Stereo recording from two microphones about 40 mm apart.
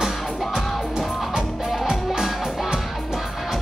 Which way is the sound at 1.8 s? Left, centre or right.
Centre.